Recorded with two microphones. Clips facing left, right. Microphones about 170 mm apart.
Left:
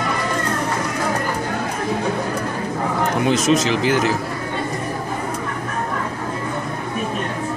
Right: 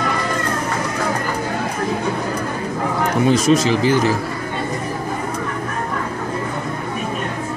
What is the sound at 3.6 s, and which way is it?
Speech, 40° right (ahead or behind).